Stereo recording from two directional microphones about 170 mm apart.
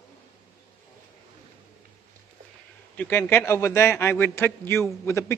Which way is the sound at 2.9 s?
10° left (ahead or behind).